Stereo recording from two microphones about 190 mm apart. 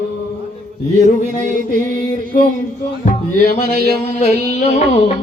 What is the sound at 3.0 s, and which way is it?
Music, 45° left (ahead or behind).